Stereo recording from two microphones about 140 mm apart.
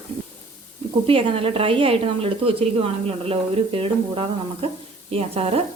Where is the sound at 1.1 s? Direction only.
40° right (ahead or behind).